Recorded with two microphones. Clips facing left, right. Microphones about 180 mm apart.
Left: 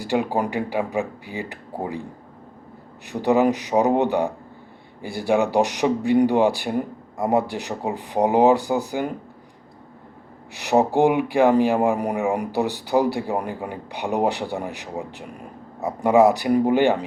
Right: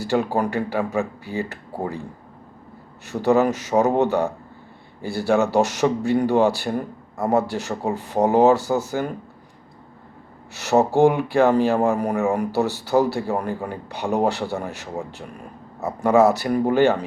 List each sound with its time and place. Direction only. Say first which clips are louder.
0.0 s speech: right 1 dB; 15° left (ahead or behind)
3.1 s speech: even; 15° left (ahead or behind)
10.5 s speech: right 1 dB; 15° left (ahead or behind)